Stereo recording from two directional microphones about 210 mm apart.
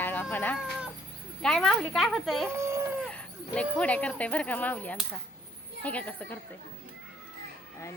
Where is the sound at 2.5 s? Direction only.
15° right (ahead or behind).